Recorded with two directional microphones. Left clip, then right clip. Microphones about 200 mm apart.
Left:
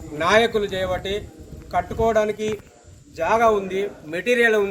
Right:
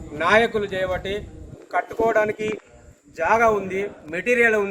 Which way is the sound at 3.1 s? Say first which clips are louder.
Right 1 dB; 10° left (ahead or behind).